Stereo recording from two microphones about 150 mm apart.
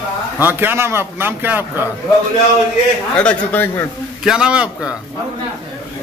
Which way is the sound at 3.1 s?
10° left (ahead or behind).